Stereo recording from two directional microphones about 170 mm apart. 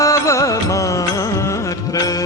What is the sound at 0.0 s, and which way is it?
Music, 20° left (ahead or behind).